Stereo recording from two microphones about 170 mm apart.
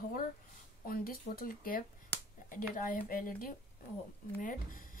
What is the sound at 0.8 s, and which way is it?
Speech, 60° left (ahead or behind).